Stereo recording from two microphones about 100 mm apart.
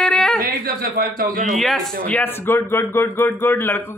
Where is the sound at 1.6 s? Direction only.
5° left (ahead or behind).